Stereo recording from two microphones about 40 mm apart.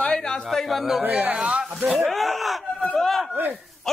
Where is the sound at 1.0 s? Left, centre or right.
Right.